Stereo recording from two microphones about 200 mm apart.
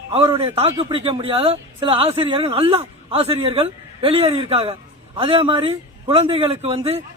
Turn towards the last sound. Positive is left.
turn(degrees=-30)  # may be behind; listen again after turning